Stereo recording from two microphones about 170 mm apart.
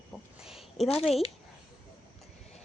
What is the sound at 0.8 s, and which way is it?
Speech, 35° left (ahead or behind).